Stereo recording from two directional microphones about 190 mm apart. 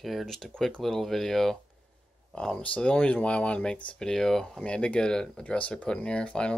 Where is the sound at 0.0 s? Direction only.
Centre (ahead or behind).